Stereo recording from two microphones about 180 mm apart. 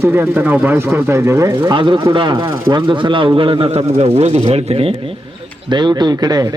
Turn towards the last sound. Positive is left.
turn(degrees=-20)  # may be behind; listen again after turning